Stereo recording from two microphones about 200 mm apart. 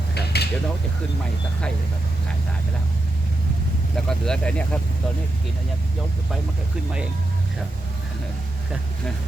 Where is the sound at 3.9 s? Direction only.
5° left (ahead or behind).